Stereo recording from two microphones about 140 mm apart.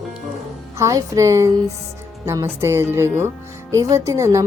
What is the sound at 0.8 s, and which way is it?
Speech, 25° right (ahead or behind).